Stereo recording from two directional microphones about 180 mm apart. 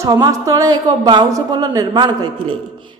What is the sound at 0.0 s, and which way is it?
A woman's voice, 20° right (ahead or behind).